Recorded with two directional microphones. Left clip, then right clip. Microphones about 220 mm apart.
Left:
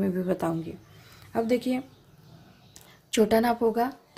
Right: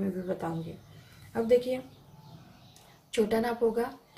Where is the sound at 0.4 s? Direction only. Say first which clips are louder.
Left 6 dB; 45° left (ahead or behind).